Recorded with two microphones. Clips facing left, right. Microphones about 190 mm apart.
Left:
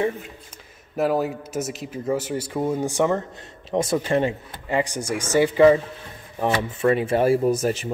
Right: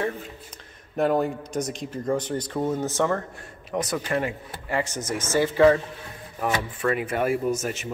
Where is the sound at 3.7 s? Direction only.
25° left (ahead or behind).